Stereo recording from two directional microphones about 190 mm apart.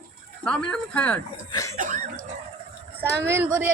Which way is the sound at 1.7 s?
45° right (ahead or behind).